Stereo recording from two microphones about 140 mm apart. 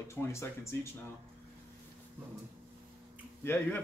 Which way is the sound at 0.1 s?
20° left (ahead or behind).